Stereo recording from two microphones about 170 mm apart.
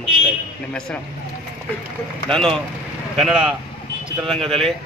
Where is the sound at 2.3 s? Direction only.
5° left (ahead or behind).